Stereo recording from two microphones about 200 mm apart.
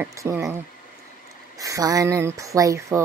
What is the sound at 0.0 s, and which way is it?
Speech, 15° right (ahead or behind).